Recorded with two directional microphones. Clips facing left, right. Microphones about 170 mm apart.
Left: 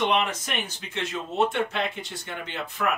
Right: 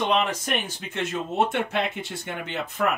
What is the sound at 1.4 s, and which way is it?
Speech, 55° right (ahead or behind).